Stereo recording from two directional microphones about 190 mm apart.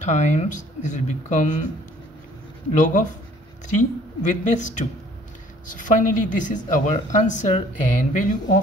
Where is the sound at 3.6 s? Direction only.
40° left (ahead or behind).